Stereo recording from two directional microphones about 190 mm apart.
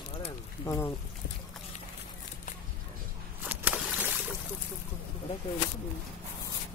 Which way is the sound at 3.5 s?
10° right (ahead or behind).